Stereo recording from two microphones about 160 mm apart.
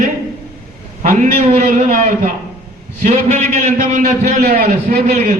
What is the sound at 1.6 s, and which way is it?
A man's voice, 55° right (ahead or behind).